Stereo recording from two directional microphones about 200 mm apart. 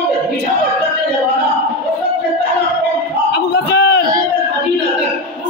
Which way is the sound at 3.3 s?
55° left (ahead or behind).